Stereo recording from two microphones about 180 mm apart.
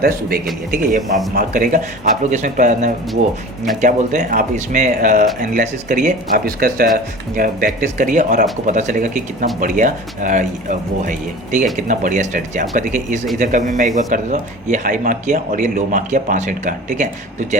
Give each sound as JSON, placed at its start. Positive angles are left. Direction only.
{"t": 0.0, "sound": "a man's voice", "side_deg": -55}
{"t": 11.5, "sound": "a man's voice", "side_deg": -45}